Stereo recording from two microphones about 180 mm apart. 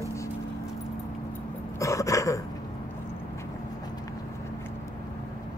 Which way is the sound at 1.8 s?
15° left (ahead or behind).